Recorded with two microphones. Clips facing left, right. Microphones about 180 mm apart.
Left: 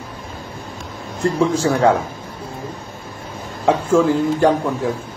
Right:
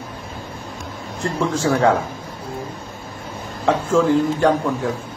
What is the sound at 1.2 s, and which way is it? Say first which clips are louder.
Speech: left 4 dB; 5° left (ahead or behind).